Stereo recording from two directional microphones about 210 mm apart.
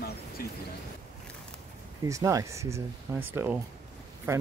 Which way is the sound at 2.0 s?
15° right (ahead or behind).